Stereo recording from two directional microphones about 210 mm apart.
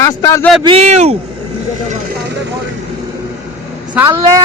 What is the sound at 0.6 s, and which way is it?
Speech, 25° right (ahead or behind).